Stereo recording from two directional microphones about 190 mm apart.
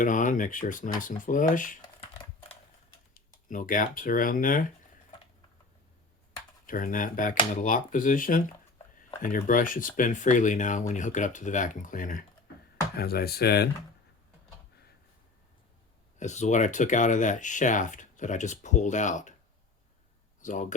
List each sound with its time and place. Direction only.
0.0 s speech: 45° left (ahead or behind)
1.8 s typing: 30° left (ahead or behind)
3.2 s speech: 45° left (ahead or behind)
6.7 s speech: 45° left (ahead or behind)
13.0 s speech: 55° left (ahead or behind)
16.1 s speech: 40° left (ahead or behind)
20.4 s speech: 40° left (ahead or behind)